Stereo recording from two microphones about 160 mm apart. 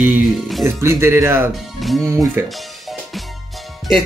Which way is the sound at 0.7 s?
15° right (ahead or behind).